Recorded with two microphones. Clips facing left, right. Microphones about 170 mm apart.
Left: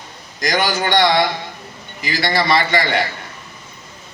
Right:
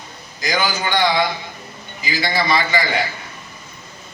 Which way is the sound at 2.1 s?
70° left (ahead or behind).